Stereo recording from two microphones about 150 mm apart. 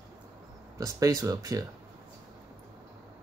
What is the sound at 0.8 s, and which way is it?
Speech, 25° right (ahead or behind).